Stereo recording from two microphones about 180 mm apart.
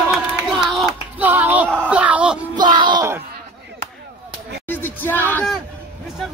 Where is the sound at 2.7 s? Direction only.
25° right (ahead or behind).